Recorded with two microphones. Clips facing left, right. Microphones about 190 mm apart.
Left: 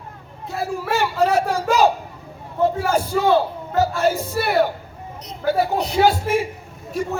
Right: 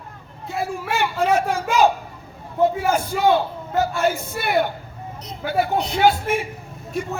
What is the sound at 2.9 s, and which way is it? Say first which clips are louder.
A man's voice: left 1 dB; 35° left (ahead or behind).